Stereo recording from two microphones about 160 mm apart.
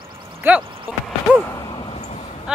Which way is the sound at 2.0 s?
45° left (ahead or behind).